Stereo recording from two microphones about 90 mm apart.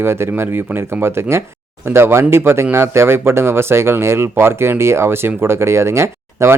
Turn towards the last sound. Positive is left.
turn(degrees=-30)  # may be behind; listen again after turning